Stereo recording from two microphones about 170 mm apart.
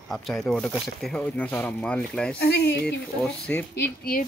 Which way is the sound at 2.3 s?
75° left (ahead or behind).